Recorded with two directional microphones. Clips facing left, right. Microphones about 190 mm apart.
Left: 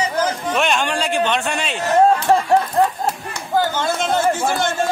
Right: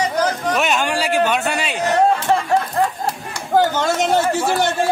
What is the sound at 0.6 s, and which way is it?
A man's voice, 5° right (ahead or behind).